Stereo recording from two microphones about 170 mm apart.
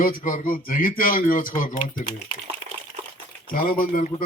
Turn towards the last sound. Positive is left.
turn(degrees=55)  # may be behind; listen again after turning